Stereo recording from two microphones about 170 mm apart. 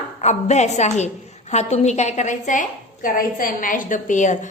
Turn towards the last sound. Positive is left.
turn(degrees=45)  # may be behind; listen again after turning